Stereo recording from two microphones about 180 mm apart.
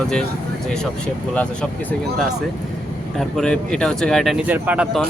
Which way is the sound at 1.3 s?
5° left (ahead or behind).